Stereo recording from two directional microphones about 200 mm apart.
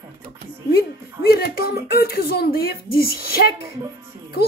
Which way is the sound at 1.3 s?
50° left (ahead or behind).